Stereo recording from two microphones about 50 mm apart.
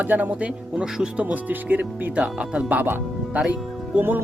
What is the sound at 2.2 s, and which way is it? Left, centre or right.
Speech, right.